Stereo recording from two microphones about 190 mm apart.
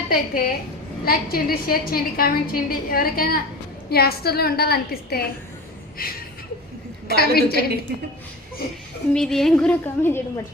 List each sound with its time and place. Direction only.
0.1 s a woman's voice: 50° left (ahead or behind)
7.2 s a woman's voice: 55° left (ahead or behind)
9.1 s a woman's voice: centre (ahead or behind)